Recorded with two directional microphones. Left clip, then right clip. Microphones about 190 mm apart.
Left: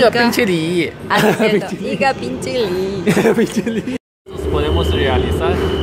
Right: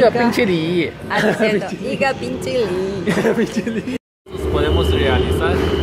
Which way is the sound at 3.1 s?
45° left (ahead or behind).